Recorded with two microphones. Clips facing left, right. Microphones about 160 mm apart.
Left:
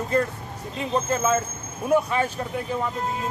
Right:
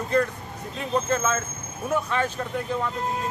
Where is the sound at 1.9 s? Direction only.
10° left (ahead or behind).